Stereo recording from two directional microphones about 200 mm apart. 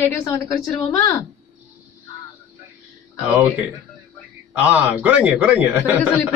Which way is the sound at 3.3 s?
10° right (ahead or behind).